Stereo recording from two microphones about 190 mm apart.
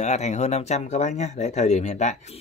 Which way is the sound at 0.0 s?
35° left (ahead or behind).